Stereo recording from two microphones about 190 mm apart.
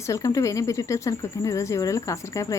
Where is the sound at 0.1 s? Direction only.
15° left (ahead or behind).